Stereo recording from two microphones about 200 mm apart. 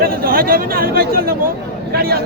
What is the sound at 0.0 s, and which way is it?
Speech, 45° right (ahead or behind).